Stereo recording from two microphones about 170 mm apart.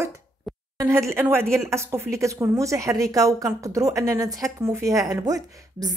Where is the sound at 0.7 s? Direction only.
15° right (ahead or behind).